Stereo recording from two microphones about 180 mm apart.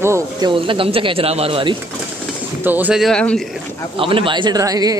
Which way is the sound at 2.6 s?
10° right (ahead or behind).